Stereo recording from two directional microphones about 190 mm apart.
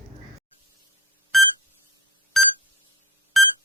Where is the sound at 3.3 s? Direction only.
Centre (ahead or behind).